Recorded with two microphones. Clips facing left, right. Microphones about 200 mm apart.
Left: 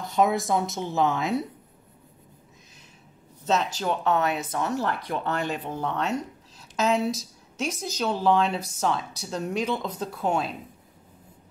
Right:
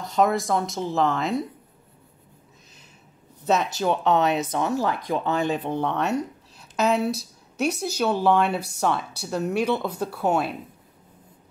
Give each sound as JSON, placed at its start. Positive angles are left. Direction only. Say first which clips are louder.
{"t": 0.0, "sound": "speech", "louder": "right 1 dB", "side_deg": 0}
{"t": 3.4, "sound": "speech", "louder": "right 3 dB", "side_deg": -10}
{"t": 5.7, "sound": "speech", "louder": "right 4 dB", "side_deg": 5}
{"t": 7.1, "sound": "a sound", "louder": "right 2 dB", "side_deg": -60}
{"t": 7.8, "sound": "speech", "louder": "right 1 dB", "side_deg": -10}